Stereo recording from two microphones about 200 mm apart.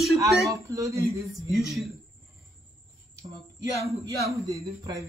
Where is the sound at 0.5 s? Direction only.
15° right (ahead or behind).